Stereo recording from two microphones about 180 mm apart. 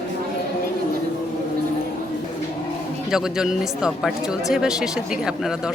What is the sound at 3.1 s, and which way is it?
Speech, 5° right (ahead or behind).